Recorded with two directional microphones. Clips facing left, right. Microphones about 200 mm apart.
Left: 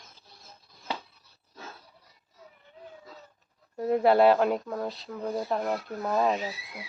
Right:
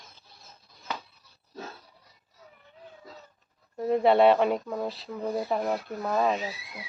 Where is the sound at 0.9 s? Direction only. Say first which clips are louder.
Left 1 dB; 30° left (ahead or behind).